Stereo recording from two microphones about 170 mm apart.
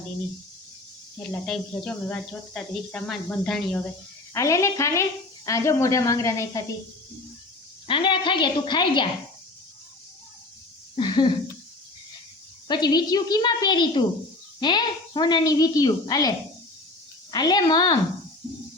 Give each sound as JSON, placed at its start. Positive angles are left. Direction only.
{"t": 1.1, "sound": "speech", "side_deg": 5}
{"t": 4.4, "sound": "a woman's voice", "side_deg": 20}
{"t": 7.9, "sound": "a woman's voice", "side_deg": 30}
{"t": 10.9, "sound": "speech", "side_deg": 30}
{"t": 12.6, "sound": "a woman's voice", "side_deg": 25}
{"t": 17.3, "sound": "a woman's voice", "side_deg": 25}